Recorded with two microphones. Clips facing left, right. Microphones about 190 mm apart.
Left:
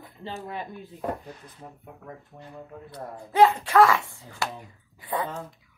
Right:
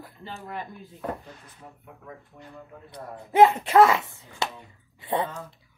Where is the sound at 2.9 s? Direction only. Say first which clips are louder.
Right 3 dB; 20° right (ahead or behind).